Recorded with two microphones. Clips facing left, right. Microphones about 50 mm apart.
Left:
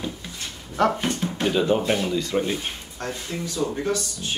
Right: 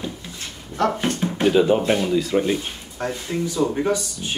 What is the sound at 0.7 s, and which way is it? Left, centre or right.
Speech, right.